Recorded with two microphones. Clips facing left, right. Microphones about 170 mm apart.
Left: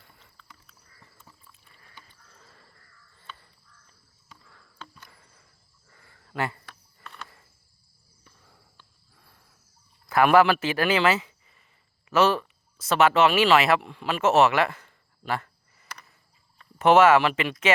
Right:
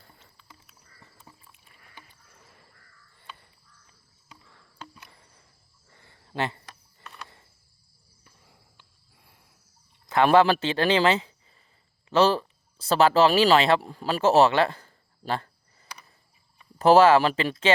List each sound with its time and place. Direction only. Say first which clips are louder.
0.0 s a sound: right 2 dB; 30° right (ahead or behind)
2.2 s crow: left 1 dB; 15° right (ahead or behind)
4.5 s cricket: right 2 dB; 15° right (ahead or behind)
5.9 s a sound: right 1 dB; 25° right (ahead or behind)
8.2 s walk: left 1 dB; 15° right (ahead or behind)
10.1 s speech: even; 25° right (ahead or behind)
16.7 s speech: right 1 dB; 35° right (ahead or behind)